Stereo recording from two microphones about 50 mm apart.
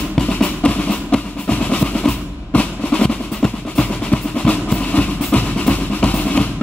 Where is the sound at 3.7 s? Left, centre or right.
Left.